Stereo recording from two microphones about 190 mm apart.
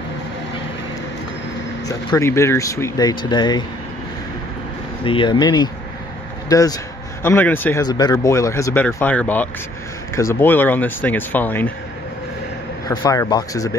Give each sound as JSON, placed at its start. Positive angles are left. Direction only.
{"t": 1.9, "sound": "speech", "side_deg": 15}
{"t": 5.0, "sound": "speech", "side_deg": 25}
{"t": 7.8, "sound": "speech", "side_deg": 20}
{"t": 12.8, "sound": "speech", "side_deg": 20}